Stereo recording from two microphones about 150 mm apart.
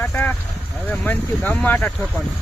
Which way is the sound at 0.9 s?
10° left (ahead or behind).